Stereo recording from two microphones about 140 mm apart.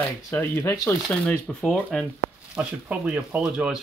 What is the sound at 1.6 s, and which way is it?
Speech, 5° left (ahead or behind).